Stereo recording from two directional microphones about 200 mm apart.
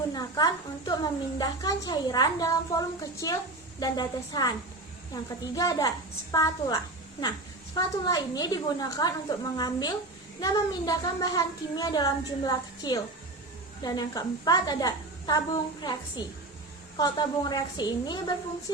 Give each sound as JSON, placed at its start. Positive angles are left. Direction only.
{"t": 0.1, "sound": "a woman's voice", "side_deg": 20}
{"t": 5.5, "sound": "a woman's voice", "side_deg": 15}